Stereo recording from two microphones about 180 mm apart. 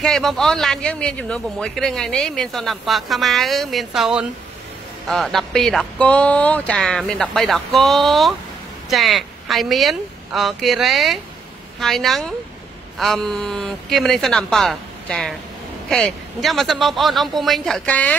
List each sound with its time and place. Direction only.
0.0 s a man's voice: centre (ahead or behind)